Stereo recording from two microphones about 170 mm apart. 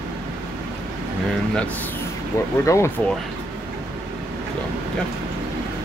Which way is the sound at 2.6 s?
15° left (ahead or behind).